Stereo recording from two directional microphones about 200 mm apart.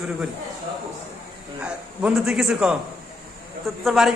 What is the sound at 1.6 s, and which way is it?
A man's voice, 5° right (ahead or behind).